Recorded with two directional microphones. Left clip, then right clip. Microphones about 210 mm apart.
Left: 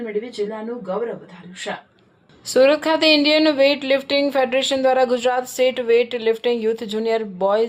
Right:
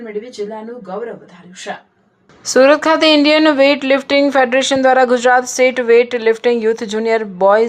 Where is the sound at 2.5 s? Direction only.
20° right (ahead or behind).